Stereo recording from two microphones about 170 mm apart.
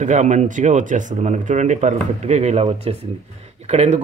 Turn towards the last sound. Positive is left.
turn(degrees=-40)  # may be behind; listen again after turning